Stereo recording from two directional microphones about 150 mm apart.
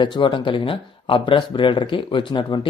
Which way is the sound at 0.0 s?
30° left (ahead or behind).